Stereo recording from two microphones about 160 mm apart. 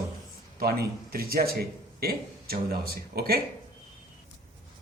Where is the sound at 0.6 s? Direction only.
75° right (ahead or behind).